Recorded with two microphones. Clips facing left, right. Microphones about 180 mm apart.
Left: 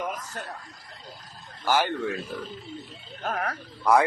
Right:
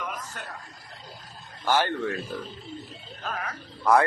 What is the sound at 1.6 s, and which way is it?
Speech, 10° left (ahead or behind).